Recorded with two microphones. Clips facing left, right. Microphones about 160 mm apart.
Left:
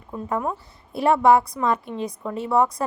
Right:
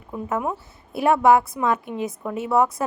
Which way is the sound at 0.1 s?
5° right (ahead or behind).